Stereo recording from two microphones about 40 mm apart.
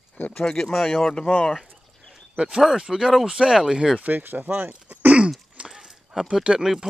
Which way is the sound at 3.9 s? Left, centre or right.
Right.